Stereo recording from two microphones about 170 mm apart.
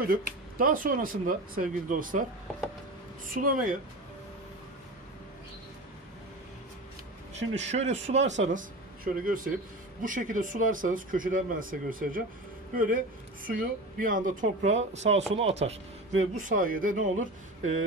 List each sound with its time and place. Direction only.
0.0 s speech: 60° right (ahead or behind)
7.3 s speech: 40° right (ahead or behind)
8.5 s speech: 55° right (ahead or behind)